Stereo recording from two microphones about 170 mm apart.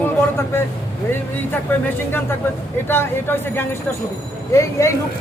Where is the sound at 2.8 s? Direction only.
15° left (ahead or behind).